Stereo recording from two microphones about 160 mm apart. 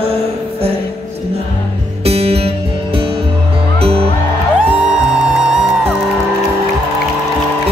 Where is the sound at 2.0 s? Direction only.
40° right (ahead or behind).